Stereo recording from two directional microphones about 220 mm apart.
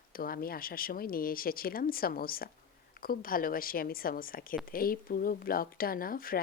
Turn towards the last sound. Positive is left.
turn(degrees=40)  # may be behind; listen again after turning